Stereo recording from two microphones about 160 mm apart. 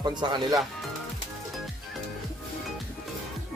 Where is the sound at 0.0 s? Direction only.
25° right (ahead or behind).